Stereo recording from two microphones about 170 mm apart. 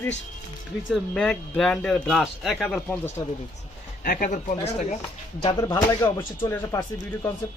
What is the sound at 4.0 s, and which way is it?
Speech, 55° left (ahead or behind).